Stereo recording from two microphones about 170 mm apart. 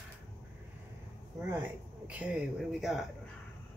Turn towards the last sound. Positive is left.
turn(degrees=0)  # may be behind; listen again after turning